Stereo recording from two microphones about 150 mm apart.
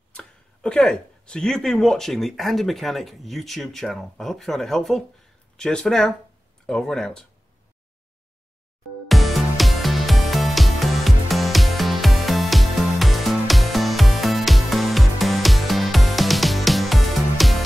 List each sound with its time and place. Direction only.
0.1 s speech: 5° left (ahead or behind)
9.0 s music: centre (ahead or behind)